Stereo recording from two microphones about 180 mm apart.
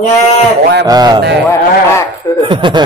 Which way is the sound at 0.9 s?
20° right (ahead or behind).